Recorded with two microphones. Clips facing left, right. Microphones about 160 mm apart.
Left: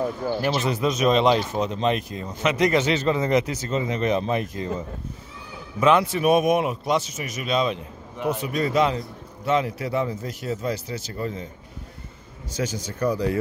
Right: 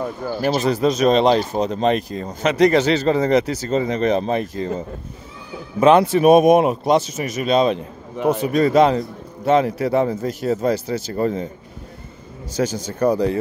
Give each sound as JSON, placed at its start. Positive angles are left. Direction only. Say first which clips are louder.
{"t": 0.3, "sound": "a man's voice", "louder": "right 7 dB", "side_deg": -40}
{"t": 12.5, "sound": "a man's voice", "louder": "right 6 dB", "side_deg": -30}